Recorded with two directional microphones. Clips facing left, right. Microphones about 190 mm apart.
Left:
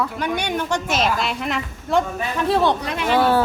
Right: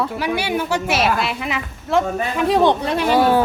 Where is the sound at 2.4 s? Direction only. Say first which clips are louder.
Right 3 dB; 15° right (ahead or behind).